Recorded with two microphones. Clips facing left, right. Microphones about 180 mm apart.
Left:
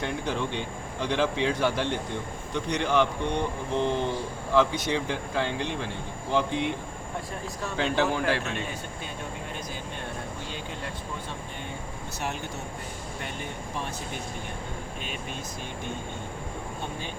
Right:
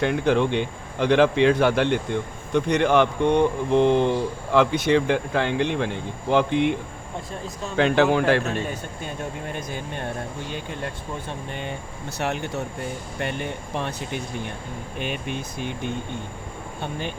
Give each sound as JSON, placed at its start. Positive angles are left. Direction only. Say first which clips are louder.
{"t": 0.0, "sound": "speech", "louder": "right 9 dB", "side_deg": -70}
{"t": 2.5, "sound": "speech", "louder": "right 8 dB", "side_deg": -55}
{"t": 7.8, "sound": "speech", "louder": "right 8 dB", "side_deg": -65}
{"t": 12.2, "sound": "speech", "louder": "right 8 dB", "side_deg": -80}
{"t": 14.9, "sound": "speech", "louder": "right 7 dB", "side_deg": -65}